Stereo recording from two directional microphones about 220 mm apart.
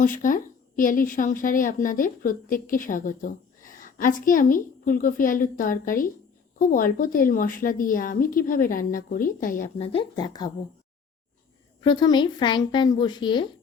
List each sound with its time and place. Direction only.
0.0 s a woman's voice: 35° left (ahead or behind)
9.7 s speech: 25° left (ahead or behind)
11.8 s speech: 20° left (ahead or behind)